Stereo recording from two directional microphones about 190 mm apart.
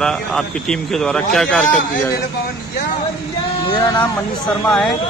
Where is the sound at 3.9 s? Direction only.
10° left (ahead or behind).